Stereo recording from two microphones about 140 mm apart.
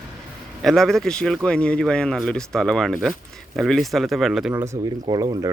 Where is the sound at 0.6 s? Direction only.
5° left (ahead or behind).